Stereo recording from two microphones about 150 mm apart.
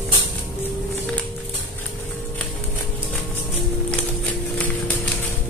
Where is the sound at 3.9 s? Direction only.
10° left (ahead or behind).